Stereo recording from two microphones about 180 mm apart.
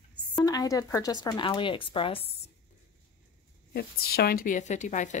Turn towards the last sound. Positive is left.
turn(degrees=40)  # may be behind; listen again after turning